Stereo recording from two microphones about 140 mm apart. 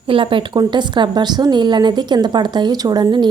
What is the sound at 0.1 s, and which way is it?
A woman's voice, 40° right (ahead or behind).